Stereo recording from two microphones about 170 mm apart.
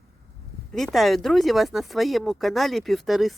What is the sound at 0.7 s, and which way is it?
Speech, centre (ahead or behind).